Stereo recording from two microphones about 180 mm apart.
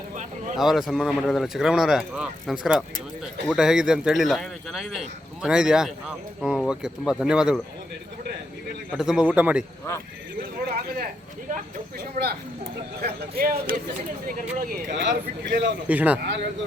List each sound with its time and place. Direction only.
0.5 s speech: centre (ahead or behind)
8.9 s speech: 5° right (ahead or behind)
10.8 s a sound: 55° right (ahead or behind)
11.5 s speech: 55° right (ahead or behind)
14.9 s speech: 80° right
15.9 s speech: 10° right (ahead or behind)